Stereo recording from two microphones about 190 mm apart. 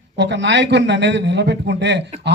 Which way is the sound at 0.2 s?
65° right (ahead or behind).